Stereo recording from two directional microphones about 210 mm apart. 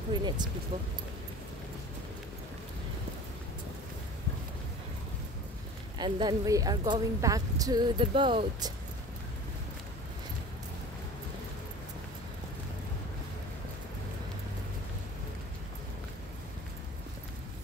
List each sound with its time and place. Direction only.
0.1 s speech: 20° right (ahead or behind)
5.9 s speech: 20° right (ahead or behind)